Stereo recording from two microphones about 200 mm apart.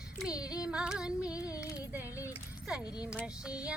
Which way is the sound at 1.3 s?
15° left (ahead or behind).